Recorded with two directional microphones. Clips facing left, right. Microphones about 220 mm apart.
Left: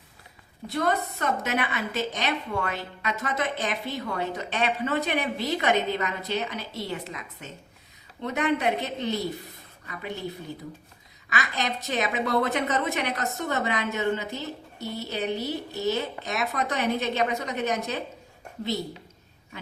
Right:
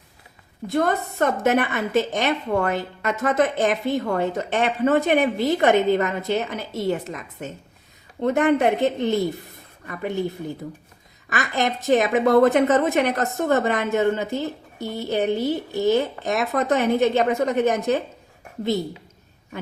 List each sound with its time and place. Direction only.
0.7 s a woman's voice: 50° right (ahead or behind)
11.3 s a woman's voice: 50° right (ahead or behind)